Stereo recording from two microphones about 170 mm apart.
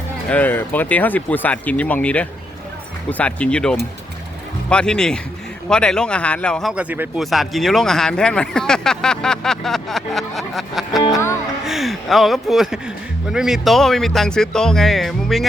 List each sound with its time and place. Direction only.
0.3 s speech: 10° left (ahead or behind)